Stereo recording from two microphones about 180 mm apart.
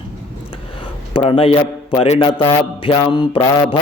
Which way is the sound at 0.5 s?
30° left (ahead or behind).